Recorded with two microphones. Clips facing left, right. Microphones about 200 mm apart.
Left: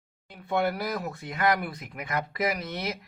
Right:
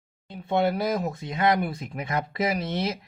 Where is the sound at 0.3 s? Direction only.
25° right (ahead or behind).